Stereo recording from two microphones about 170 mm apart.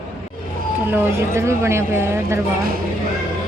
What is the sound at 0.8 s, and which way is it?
A woman's voice, 15° right (ahead or behind).